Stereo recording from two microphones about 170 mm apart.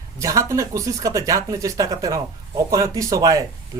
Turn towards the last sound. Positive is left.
turn(degrees=-20)  # may be behind; listen again after turning